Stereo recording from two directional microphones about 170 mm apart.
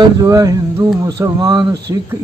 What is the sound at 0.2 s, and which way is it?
A man's voice, 20° right (ahead or behind).